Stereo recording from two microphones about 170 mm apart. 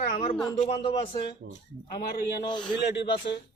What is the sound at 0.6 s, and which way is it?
Speech, 35° left (ahead or behind).